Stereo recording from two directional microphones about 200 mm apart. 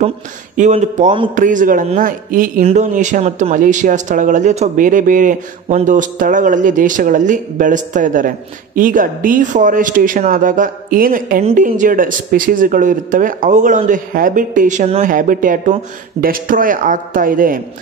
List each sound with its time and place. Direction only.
0.6 s speech: 35° right (ahead or behind)
1.3 s a man's voice: 40° right (ahead or behind)